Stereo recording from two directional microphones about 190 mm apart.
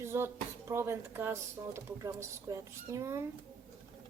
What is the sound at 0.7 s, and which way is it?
Speech, 15° right (ahead or behind).